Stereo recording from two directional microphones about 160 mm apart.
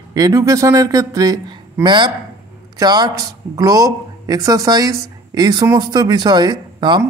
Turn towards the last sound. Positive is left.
turn(degrees=-30)  # may be behind; listen again after turning